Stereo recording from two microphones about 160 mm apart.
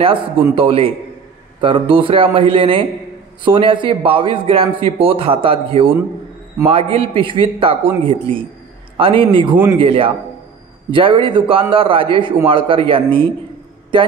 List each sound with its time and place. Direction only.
0.6 s a man's voice: 35° right (ahead or behind)